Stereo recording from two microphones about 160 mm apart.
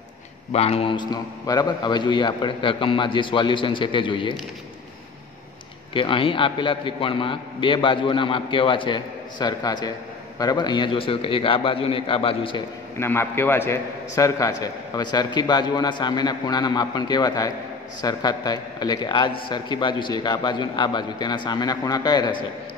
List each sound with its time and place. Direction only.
0.5 s a man's voice: 40° left (ahead or behind)
5.9 s a man's voice: 30° left (ahead or behind)
13.0 s a man's voice: 15° left (ahead or behind)